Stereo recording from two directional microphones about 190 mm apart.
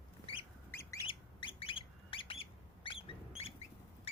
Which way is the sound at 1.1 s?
30° left (ahead or behind).